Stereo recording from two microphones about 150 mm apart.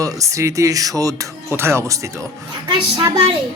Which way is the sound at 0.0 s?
20° right (ahead or behind).